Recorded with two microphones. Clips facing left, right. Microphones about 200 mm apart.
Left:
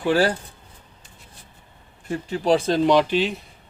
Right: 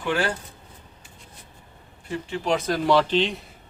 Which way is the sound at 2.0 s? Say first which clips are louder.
Left 5 dB; 40° left (ahead or behind).